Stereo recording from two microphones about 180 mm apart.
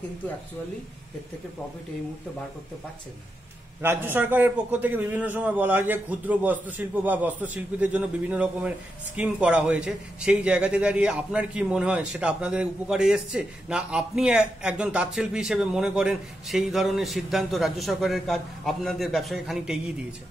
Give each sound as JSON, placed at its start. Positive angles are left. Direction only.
{"t": 3.8, "sound": "a man's voice", "side_deg": -10}